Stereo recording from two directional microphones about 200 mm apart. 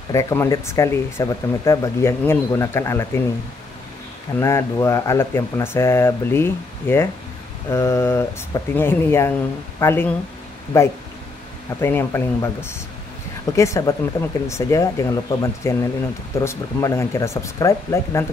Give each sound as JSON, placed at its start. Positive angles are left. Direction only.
{"t": 0.1, "sound": "speech", "side_deg": 15}
{"t": 4.4, "sound": "speech", "side_deg": 15}
{"t": 13.6, "sound": "speech", "side_deg": 15}